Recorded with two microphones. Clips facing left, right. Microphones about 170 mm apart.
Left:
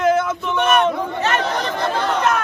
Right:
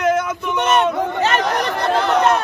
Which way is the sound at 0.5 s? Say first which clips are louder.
Even; 20° right (ahead or behind).